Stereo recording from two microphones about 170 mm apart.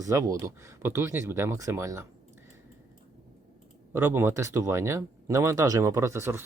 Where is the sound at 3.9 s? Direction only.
15° right (ahead or behind).